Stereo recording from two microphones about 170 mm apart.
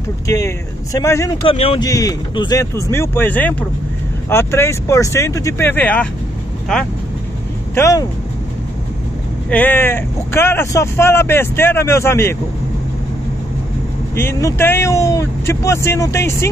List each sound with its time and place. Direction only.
0.9 s speech: 15° left (ahead or behind)
1.4 s speech: 35° left (ahead or behind)
1.8 s speech: 20° left (ahead or behind)
7.7 s speech: 20° left (ahead or behind)
9.5 s speech: 10° left (ahead or behind)
14.1 s speech: 15° left (ahead or behind)